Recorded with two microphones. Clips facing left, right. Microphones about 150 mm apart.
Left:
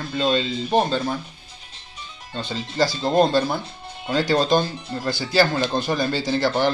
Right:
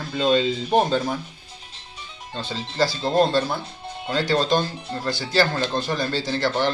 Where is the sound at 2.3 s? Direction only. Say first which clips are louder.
Left 2 dB; centre (ahead or behind).